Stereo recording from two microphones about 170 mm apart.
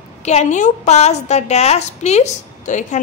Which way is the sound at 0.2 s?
40° left (ahead or behind).